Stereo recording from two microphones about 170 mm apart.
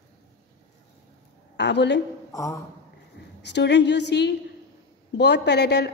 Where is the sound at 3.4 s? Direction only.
90° left.